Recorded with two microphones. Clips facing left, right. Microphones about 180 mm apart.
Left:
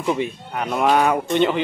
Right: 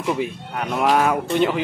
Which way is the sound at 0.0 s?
Centre (ahead or behind).